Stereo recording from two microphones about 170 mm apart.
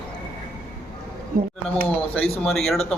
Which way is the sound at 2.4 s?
Centre (ahead or behind).